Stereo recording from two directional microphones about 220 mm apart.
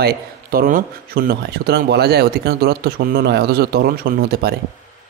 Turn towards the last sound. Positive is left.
turn(degrees=-45)  # may be behind; listen again after turning